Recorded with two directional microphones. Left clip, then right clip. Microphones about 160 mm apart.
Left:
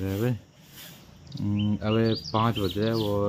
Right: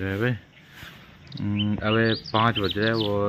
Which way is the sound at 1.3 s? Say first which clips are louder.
Right 1 dB; 90° left.